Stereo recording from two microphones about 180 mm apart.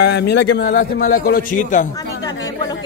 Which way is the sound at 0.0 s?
65° left (ahead or behind).